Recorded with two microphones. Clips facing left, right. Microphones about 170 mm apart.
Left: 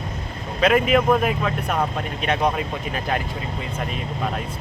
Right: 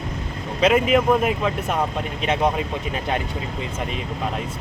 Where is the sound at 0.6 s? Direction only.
20° right (ahead or behind).